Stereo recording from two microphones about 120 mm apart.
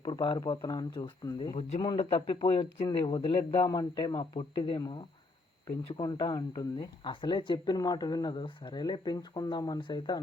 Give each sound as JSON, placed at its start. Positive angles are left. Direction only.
{"t": 0.0, "sound": "speech", "side_deg": 40}
{"t": 1.5, "sound": "a man's voice", "side_deg": 55}
{"t": 5.6, "sound": "speech", "side_deg": 35}